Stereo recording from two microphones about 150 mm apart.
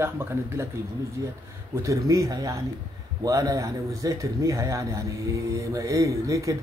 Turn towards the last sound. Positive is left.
turn(degrees=-20)  # may be behind; listen again after turning